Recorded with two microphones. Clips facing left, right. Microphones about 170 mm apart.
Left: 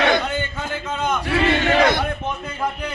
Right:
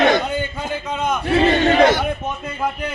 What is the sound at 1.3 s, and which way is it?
Speech, 35° right (ahead or behind).